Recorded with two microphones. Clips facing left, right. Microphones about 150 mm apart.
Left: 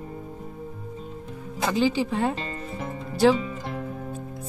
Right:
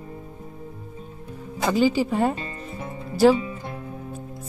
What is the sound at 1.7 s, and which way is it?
Speech, 5° right (ahead or behind).